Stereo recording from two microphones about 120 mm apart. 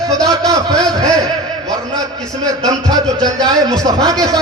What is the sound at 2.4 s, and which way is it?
A man's voice, 30° right (ahead or behind).